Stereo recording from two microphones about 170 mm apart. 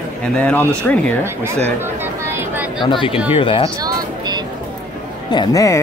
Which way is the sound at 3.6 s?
20° right (ahead or behind).